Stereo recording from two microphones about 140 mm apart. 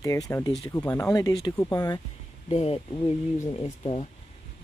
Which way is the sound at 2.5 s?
45° left (ahead or behind).